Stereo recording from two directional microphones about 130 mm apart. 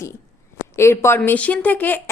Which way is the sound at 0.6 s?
20° left (ahead or behind).